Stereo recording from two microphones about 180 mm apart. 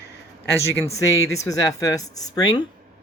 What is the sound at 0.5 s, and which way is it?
Speech, 15° left (ahead or behind).